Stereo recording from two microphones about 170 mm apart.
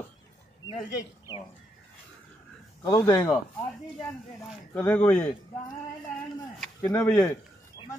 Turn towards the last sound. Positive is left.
turn(degrees=10)  # may be behind; listen again after turning